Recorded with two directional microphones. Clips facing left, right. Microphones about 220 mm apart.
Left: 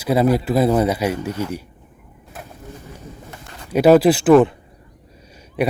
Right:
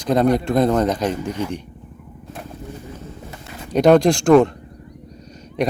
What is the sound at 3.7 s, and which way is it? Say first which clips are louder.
Speech: left 1 dB; 5° left (ahead or behind).